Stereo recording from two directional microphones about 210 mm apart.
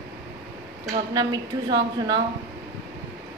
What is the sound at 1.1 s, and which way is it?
A woman's voice, 20° right (ahead or behind).